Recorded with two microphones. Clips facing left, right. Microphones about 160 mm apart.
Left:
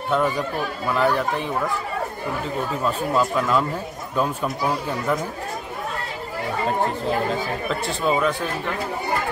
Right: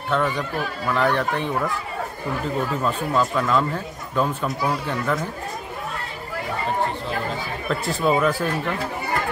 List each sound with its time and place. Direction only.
0.1 s speech: 10° left (ahead or behind)
2.8 s speech: 5° left (ahead or behind)
7.8 s speech: centre (ahead or behind)